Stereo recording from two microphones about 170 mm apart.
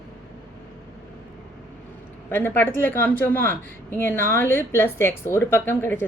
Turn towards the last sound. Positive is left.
turn(degrees=15)  # may be behind; listen again after turning